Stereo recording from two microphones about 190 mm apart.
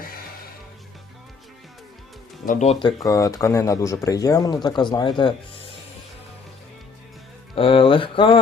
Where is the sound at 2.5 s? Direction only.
40° left (ahead or behind).